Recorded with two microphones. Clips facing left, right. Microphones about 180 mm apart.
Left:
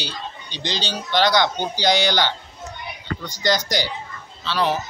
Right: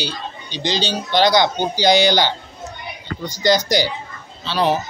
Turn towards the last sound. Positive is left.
turn(degrees=-15)  # may be behind; listen again after turning